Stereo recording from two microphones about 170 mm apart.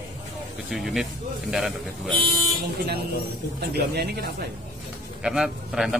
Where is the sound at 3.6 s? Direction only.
70° right (ahead or behind).